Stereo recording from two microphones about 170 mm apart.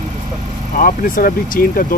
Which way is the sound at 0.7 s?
55° left (ahead or behind).